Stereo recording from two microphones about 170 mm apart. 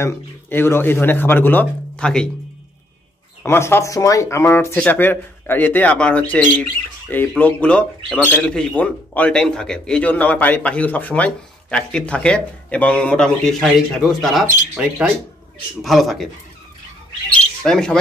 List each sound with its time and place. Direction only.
0.0 s speech: 15° left (ahead or behind)
3.4 s speech: 15° left (ahead or behind)
17.6 s speech: 5° left (ahead or behind)